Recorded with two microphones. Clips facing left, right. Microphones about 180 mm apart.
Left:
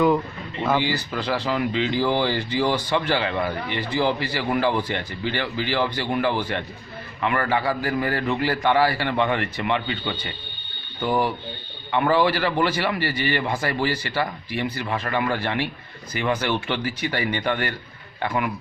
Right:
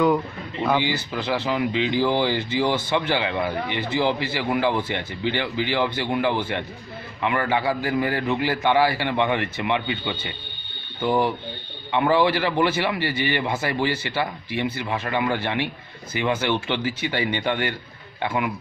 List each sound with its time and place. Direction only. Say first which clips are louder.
0.0 s speech: even; centre (ahead or behind)
0.7 s a man's voice: even; 15° right (ahead or behind)